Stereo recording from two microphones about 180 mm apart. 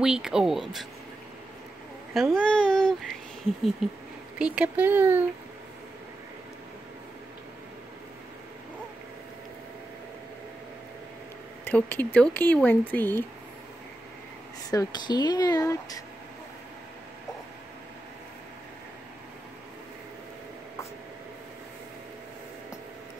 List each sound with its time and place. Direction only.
0.0 s speech: 5° right (ahead or behind)
2.1 s speech: centre (ahead or behind)
11.6 s speech: 10° left (ahead or behind)
14.7 s speech: 20° left (ahead or behind)